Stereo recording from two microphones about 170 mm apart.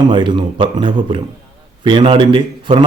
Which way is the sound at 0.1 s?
25° right (ahead or behind).